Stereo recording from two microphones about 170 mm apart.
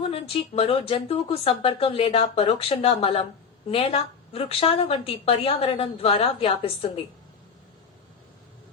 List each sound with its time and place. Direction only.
0.1 s a woman's voice: 35° left (ahead or behind)